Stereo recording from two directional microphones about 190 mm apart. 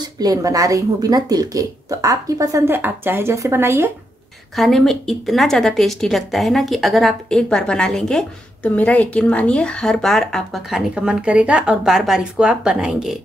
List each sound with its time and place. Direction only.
0.2 s a woman's voice: 20° right (ahead or behind)
4.6 s a woman's voice: centre (ahead or behind)